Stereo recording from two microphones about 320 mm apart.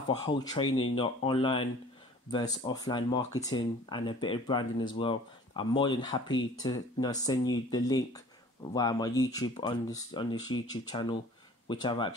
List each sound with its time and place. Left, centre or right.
0.2 s speech: centre